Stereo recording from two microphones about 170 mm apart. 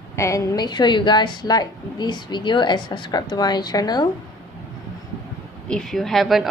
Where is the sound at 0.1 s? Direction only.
20° left (ahead or behind).